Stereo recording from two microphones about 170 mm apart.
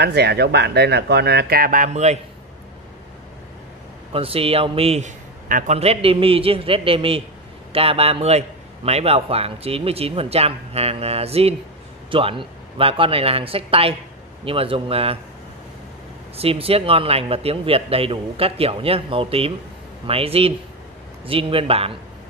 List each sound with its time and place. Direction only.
0.0 s speech: 75° right (ahead or behind); by 2.1 s 45° right (ahead or behind)
4.1 s a man's voice: 35° right (ahead or behind)
16.3 s a man's voice: 35° right (ahead or behind)